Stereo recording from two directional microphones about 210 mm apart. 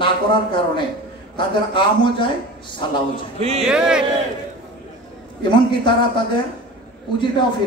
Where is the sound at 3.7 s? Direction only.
5° right (ahead or behind).